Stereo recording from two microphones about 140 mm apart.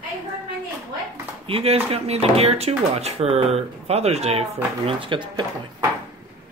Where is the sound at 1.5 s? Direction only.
45° right (ahead or behind).